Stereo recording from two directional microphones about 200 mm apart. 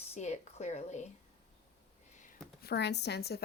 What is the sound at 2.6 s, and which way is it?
Speech, 55° left (ahead or behind).